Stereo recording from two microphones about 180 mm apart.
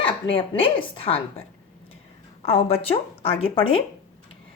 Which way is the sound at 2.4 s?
30° left (ahead or behind).